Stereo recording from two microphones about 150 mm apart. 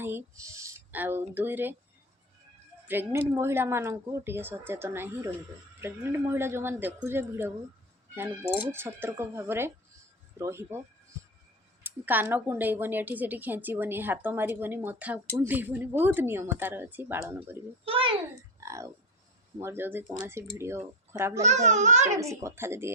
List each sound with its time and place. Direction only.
0.0 s speech: 15° right (ahead or behind)
2.8 s a woman's voice: 15° right (ahead or behind)
11.8 s a woman's voice: 10° right (ahead or behind)
17.8 s a sound: 35° right (ahead or behind)
18.6 s a sound: 20° right (ahead or behind)
19.5 s a woman's voice: 15° right (ahead or behind)
21.4 s a child's voice: 50° right (ahead or behind)
22.2 s a woman's voice: 20° right (ahead or behind)